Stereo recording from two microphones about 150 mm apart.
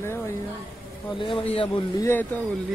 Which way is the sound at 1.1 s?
35° left (ahead or behind).